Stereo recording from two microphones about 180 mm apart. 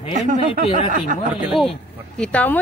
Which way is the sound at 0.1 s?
45° right (ahead or behind).